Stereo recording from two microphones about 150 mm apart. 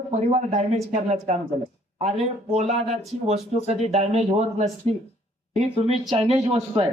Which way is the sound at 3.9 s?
45° right (ahead or behind).